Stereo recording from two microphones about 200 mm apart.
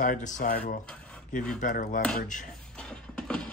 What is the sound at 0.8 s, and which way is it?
Dishes, 5° left (ahead or behind).